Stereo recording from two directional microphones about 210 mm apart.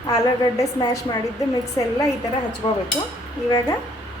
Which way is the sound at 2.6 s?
30° left (ahead or behind).